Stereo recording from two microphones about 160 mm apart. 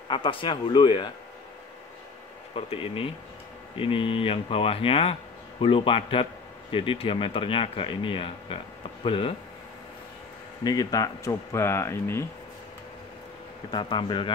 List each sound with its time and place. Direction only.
0.1 s speech: 30° left (ahead or behind)
2.5 s speech: 35° left (ahead or behind)
10.6 s speech: 25° left (ahead or behind)
13.7 s speech: 30° left (ahead or behind)